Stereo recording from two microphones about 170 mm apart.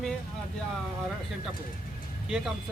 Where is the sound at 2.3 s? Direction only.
5° right (ahead or behind).